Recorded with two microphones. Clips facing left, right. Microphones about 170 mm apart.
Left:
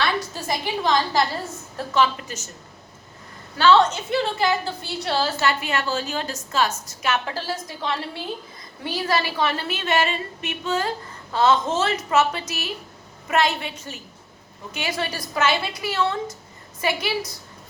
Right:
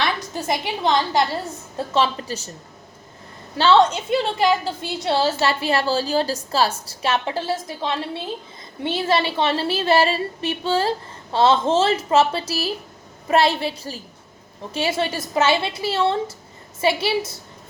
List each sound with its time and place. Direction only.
0.0 s a woman's voice: 20° right (ahead or behind)
3.6 s a woman's voice: 25° right (ahead or behind)